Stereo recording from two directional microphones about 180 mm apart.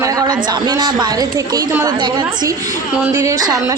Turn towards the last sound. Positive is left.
turn(degrees=-20)  # may be behind; listen again after turning